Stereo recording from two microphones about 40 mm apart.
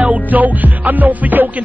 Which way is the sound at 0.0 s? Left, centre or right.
Right.